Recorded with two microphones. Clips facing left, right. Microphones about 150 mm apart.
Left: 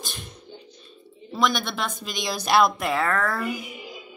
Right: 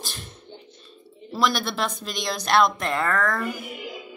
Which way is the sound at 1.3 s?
Centre (ahead or behind).